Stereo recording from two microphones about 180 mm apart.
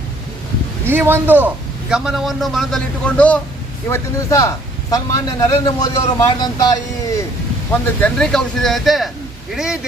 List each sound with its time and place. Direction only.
0.9 s a man's voice: 10° right (ahead or behind); by 3.4 s 5° left (ahead or behind)
3.8 s a man's voice: 15° left (ahead or behind)
7.7 s a man's voice: 5° left (ahead or behind)